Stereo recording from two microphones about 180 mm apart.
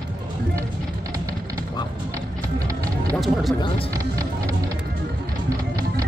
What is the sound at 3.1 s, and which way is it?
Speech, centre (ahead or behind).